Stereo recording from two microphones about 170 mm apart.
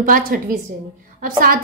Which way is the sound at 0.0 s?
55° right (ahead or behind).